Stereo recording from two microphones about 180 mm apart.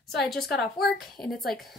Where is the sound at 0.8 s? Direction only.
Centre (ahead or behind).